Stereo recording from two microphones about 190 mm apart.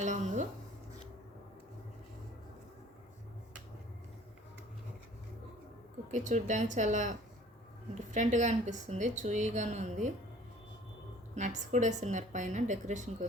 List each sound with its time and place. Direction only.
0.0 s a sound: 40° right (ahead or behind)
6.1 s a woman's voice: 40° right (ahead or behind)
11.3 s a woman's voice: 40° right (ahead or behind)